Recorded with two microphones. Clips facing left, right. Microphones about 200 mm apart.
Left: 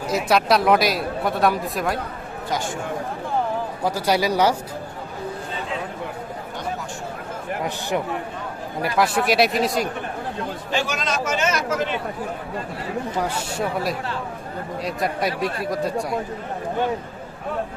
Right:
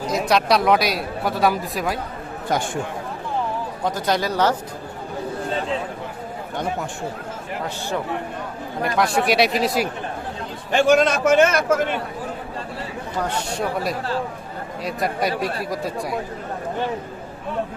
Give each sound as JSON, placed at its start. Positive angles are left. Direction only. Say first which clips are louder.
{"t": 0.1, "sound": "speech", "louder": "even", "side_deg": 5}
{"t": 3.8, "sound": "speech", "louder": "left 1 dB", "side_deg": 10}
{"t": 7.6, "sound": "speech", "louder": "left 1 dB", "side_deg": 15}
{"t": 8.8, "sound": "speech", "louder": "right 1 dB", "side_deg": 0}
{"t": 10.7, "sound": "a man's voice", "louder": "right 11 dB", "side_deg": -55}
{"t": 13.1, "sound": "speech", "louder": "right 4 dB", "side_deg": 5}